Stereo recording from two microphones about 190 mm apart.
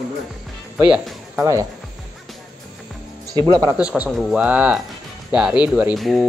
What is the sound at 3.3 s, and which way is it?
Speech, 20° right (ahead or behind).